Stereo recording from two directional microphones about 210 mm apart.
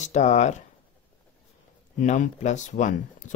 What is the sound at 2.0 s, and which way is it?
Speech, 35° left (ahead or behind).